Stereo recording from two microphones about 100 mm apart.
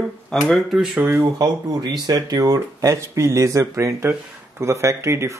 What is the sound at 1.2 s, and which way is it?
Speech, 40° right (ahead or behind).